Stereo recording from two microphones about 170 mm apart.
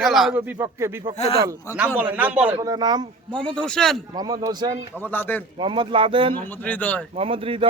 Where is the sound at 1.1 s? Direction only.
35° left (ahead or behind).